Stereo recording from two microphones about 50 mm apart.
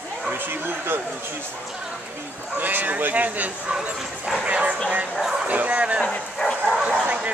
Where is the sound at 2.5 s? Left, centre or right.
Right.